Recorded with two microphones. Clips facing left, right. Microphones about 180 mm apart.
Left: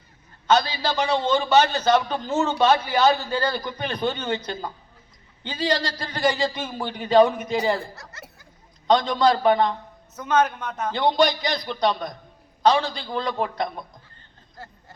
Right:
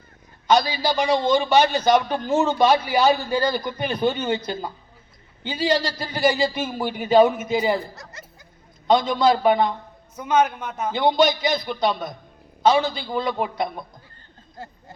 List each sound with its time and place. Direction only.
0.4 s a man's voice: 10° right (ahead or behind)
8.9 s speech: 5° right (ahead or behind)
14.6 s a man's voice: 15° right (ahead or behind)